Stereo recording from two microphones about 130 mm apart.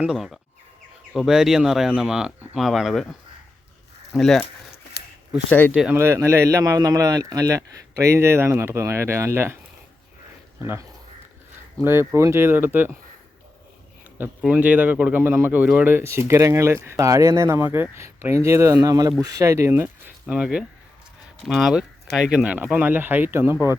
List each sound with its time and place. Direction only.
0.0 s speech: 5° right (ahead or behind)
5.5 s speech: 15° left (ahead or behind)
5.9 s speech: 20° right (ahead or behind)
10.6 s speech: 25° right (ahead or behind)
14.4 s speech: 10° right (ahead or behind)